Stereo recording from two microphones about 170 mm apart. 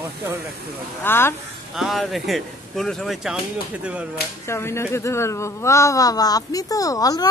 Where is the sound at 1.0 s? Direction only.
15° left (ahead or behind).